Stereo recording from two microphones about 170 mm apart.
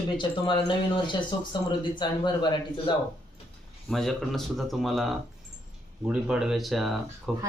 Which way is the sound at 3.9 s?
Centre (ahead or behind).